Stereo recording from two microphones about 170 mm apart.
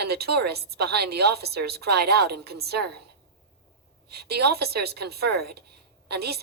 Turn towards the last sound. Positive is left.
turn(degrees=-70)  # may be behind; listen again after turning